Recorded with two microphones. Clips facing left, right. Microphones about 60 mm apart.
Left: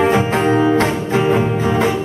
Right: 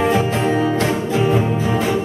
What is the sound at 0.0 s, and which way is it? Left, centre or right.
Music, left.